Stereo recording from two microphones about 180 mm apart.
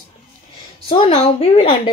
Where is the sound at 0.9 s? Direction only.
30° left (ahead or behind).